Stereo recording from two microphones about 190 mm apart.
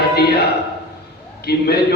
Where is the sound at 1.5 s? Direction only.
55° left (ahead or behind).